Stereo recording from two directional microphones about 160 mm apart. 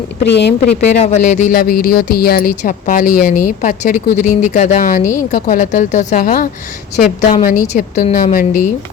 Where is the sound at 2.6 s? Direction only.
55° left (ahead or behind).